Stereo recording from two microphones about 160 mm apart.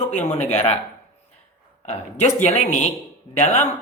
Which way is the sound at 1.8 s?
45° left (ahead or behind).